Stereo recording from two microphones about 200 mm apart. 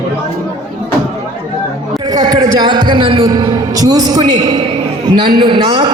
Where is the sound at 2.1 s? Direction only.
20° right (ahead or behind).